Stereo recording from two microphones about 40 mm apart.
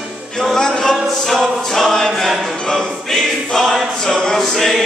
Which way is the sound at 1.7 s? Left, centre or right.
Centre.